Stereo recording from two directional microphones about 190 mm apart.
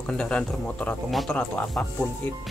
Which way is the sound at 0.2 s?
5° left (ahead or behind).